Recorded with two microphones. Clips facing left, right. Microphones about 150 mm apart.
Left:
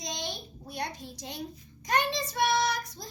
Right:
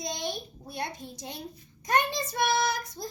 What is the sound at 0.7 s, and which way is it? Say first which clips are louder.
A child's voice: right 1 dB; 25° right (ahead or behind).